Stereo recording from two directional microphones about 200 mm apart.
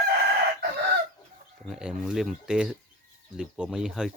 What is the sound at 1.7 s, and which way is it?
Speech, 5° right (ahead or behind).